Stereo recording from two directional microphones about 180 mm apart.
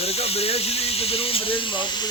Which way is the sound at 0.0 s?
35° left (ahead or behind).